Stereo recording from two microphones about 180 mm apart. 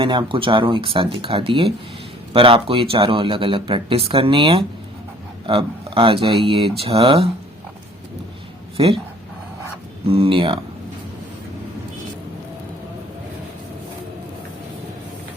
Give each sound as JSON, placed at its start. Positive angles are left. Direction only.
{"t": 0.0, "sound": "speech", "side_deg": -30}
{"t": 10.1, "sound": "speech", "side_deg": -30}